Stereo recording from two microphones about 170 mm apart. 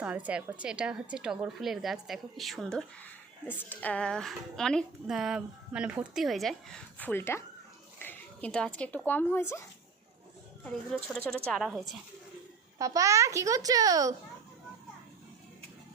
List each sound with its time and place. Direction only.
0.3 s a woman's voice: 10° right (ahead or behind); by 9.6 s 15° left (ahead or behind)
10.9 s a woman's voice: 5° left (ahead or behind)
12.8 s a child's voice: 20° right (ahead or behind)